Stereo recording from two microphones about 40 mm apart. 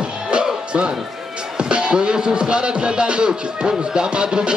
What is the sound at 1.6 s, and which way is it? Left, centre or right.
Speech, right.